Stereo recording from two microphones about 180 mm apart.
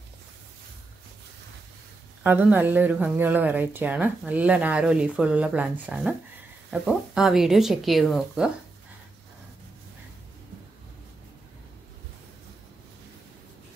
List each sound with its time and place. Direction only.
2.2 s speech: 10° right (ahead or behind)